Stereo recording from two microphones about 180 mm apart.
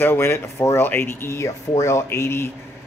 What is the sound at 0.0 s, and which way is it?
A man's voice, 10° left (ahead or behind).